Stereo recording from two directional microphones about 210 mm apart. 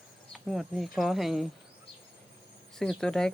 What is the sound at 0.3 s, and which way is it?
Speech, centre (ahead or behind).